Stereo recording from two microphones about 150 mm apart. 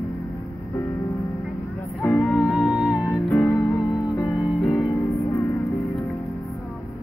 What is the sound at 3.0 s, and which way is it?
Music, 15° left (ahead or behind).